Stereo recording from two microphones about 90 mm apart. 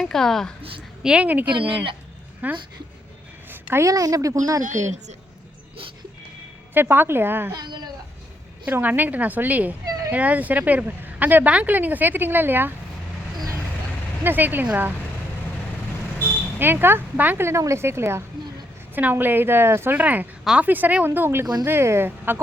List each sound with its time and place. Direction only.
0.0 s a woman's voice: 5° left (ahead or behind)
1.0 s speech: 15° right (ahead or behind)
1.5 s speech: 70° right (ahead or behind)
2.4 s speech: 15° right (ahead or behind)
3.5 s a sound: 25° right (ahead or behind)
3.8 s speech: 40° right (ahead or behind)
6.7 s a woman's voice: 25° right (ahead or behind)
7.5 s speech: 50° right (ahead or behind)
8.6 s a woman's voice: 15° right (ahead or behind)
14.3 s a woman's voice: 20° right (ahead or behind)
16.6 s a woman's voice: 25° right (ahead or behind)
20.0 s a woman's voice: 15° right (ahead or behind)